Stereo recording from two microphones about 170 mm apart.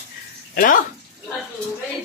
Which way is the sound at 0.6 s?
55° left (ahead or behind).